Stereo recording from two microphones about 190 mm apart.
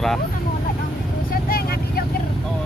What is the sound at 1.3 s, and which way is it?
Vehicle, 55° left (ahead or behind).